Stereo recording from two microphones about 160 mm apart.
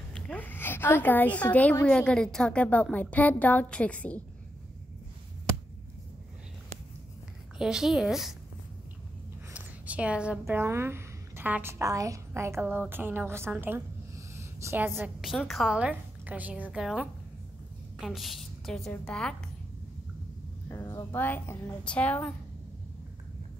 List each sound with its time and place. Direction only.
0.1 s a woman's voice: 10° left (ahead or behind)
7.5 s a woman's voice: 5° right (ahead or behind)
9.5 s a woman's voice: 10° right (ahead or behind)
15.1 s a woman's voice: centre (ahead or behind)
20.6 s a woman's voice: 20° left (ahead or behind)